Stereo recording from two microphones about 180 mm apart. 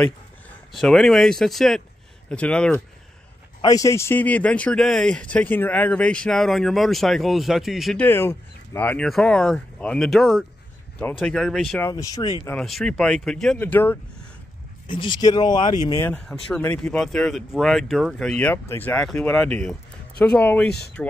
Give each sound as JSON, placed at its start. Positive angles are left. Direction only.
{"t": 0.7, "sound": "a man's voice", "side_deg": 0}
{"t": 3.6, "sound": "a man's voice", "side_deg": 20}
{"t": 11.8, "sound": "speech", "side_deg": 20}
{"t": 12.4, "sound": "a man's voice", "side_deg": 5}
{"t": 14.9, "sound": "speech", "side_deg": 25}
{"t": 16.4, "sound": "a man's voice", "side_deg": 5}